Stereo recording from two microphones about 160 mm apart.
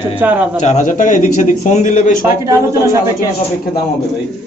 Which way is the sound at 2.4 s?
20° right (ahead or behind).